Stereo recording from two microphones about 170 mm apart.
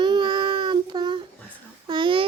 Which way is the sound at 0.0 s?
30° right (ahead or behind).